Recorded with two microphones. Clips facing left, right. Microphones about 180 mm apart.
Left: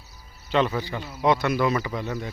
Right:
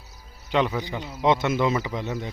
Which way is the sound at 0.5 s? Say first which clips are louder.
Even; 15° right (ahead or behind).